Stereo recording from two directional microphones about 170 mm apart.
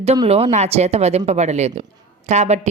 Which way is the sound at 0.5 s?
40° right (ahead or behind).